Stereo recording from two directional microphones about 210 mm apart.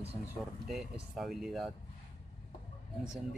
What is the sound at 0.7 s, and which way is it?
Speech, centre (ahead or behind).